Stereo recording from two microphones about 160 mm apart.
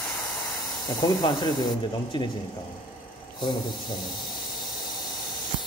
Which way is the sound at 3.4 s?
30° left (ahead or behind).